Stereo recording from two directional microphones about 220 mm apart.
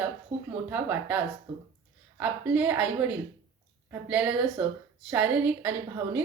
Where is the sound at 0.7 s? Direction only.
10° right (ahead or behind).